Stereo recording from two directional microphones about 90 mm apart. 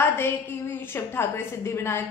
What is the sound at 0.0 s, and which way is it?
A woman's voice, 25° left (ahead or behind).